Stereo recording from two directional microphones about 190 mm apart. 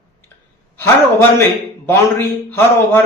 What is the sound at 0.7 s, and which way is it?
Speech, 15° left (ahead or behind).